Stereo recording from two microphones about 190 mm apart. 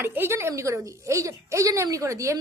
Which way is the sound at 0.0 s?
10° right (ahead or behind).